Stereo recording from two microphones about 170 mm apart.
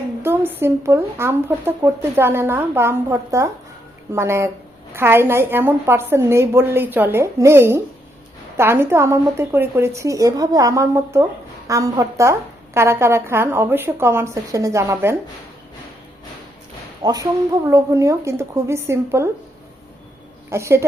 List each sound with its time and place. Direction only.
0.2 s a woman's voice: 15° right (ahead or behind)
17.0 s a woman's voice: 20° right (ahead or behind)
20.5 s a woman's voice: 15° right (ahead or behind)